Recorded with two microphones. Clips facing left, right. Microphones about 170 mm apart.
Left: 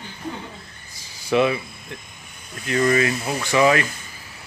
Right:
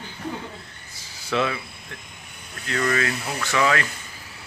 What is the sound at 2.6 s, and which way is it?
Speech, 20° left (ahead or behind).